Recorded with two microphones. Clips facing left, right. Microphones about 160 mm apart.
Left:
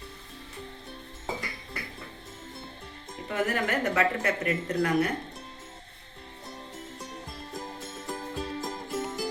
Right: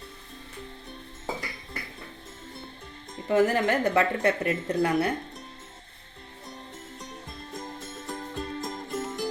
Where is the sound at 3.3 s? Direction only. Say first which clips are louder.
Right 6 dB; 30° right (ahead or behind).